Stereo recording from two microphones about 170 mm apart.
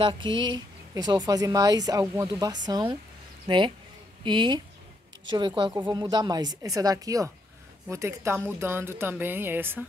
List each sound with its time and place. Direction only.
0.0 s speech: 30° right (ahead or behind)
5.9 s speech: 25° right (ahead or behind)